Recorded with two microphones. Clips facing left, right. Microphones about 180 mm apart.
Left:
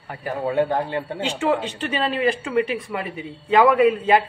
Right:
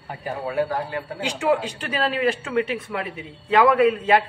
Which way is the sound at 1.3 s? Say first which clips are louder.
Right 1 dB; 10° right (ahead or behind).